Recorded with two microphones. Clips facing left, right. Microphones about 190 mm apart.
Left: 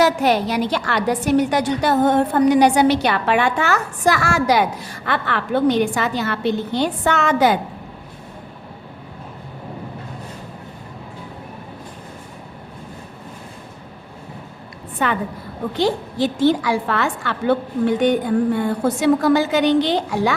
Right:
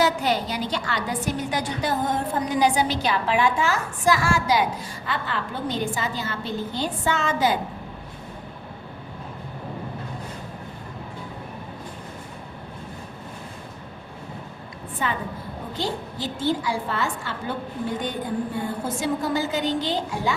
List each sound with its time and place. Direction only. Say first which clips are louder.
0.0 s a woman's voice: left 6 dB; 70° left (ahead or behind)
14.9 s a woman's voice: left 6 dB; 70° left (ahead or behind)